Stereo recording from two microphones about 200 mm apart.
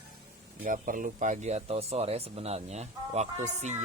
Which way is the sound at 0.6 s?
45° right (ahead or behind).